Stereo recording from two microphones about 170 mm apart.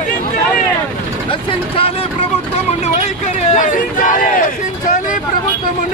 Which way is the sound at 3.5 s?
50° left (ahead or behind).